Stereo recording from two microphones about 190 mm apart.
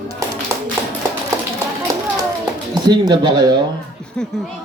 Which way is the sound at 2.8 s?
20° right (ahead or behind).